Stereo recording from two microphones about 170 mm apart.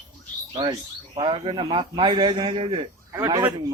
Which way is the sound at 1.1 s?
30° right (ahead or behind).